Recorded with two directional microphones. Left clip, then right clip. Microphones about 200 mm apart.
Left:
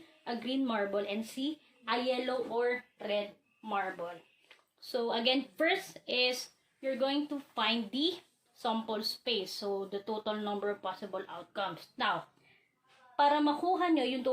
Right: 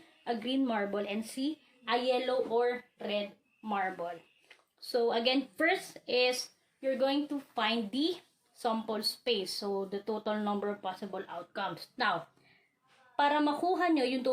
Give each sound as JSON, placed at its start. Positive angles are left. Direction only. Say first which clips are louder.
{"t": 0.3, "sound": "speech", "louder": "right 2 dB", "side_deg": -20}
{"t": 6.8, "sound": "speech", "louder": "right 2 dB", "side_deg": -35}
{"t": 13.1, "sound": "a woman's voice", "louder": "left 1 dB", "side_deg": -35}